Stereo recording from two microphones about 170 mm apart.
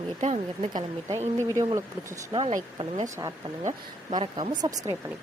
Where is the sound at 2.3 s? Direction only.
35° right (ahead or behind).